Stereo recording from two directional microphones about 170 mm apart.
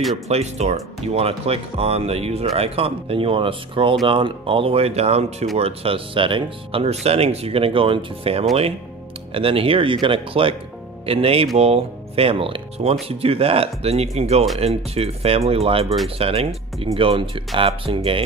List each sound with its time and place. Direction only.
0.3 s speech: 40° right (ahead or behind)